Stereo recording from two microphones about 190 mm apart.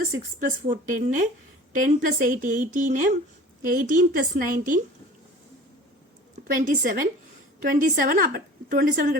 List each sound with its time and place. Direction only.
0.2 s a woman's voice: 45° right (ahead or behind)
6.6 s a woman's voice: 45° right (ahead or behind)